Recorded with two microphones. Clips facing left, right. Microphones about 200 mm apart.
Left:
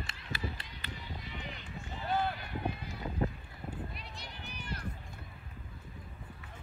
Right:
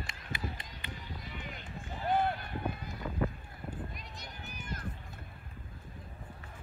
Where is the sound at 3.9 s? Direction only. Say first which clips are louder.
Even; 45° right (ahead or behind).